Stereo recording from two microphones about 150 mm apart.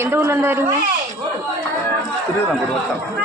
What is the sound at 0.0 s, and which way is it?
Speech, 15° right (ahead or behind).